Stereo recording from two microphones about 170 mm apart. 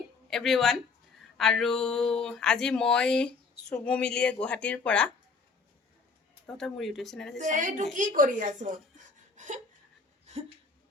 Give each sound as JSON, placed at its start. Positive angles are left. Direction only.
{"t": 0.3, "sound": "speech", "side_deg": 0}
{"t": 6.6, "sound": "speech", "side_deg": 0}
{"t": 7.3, "sound": "a woman's voice", "side_deg": -45}
{"t": 9.3, "sound": "a sound", "side_deg": -45}